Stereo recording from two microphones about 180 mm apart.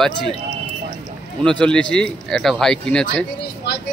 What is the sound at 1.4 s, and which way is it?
Speech, 5° left (ahead or behind).